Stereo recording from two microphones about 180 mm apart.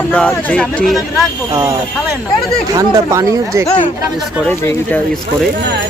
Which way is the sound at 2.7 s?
20° right (ahead or behind).